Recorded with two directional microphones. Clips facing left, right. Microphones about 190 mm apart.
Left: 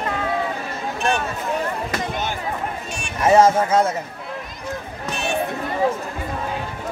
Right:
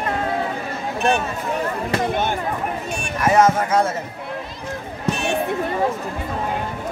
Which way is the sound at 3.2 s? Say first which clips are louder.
Left 2 dB; 25° left (ahead or behind).